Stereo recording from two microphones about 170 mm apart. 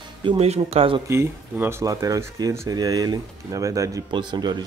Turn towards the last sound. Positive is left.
turn(degrees=-25)  # may be behind; listen again after turning